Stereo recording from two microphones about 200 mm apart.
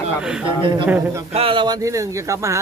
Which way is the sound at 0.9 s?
10° right (ahead or behind).